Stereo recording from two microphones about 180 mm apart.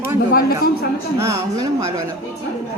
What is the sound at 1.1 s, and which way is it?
Speech, 15° right (ahead or behind).